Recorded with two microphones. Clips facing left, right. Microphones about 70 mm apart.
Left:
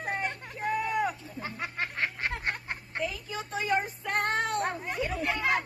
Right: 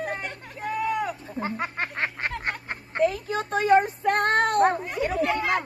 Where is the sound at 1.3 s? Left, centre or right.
Right.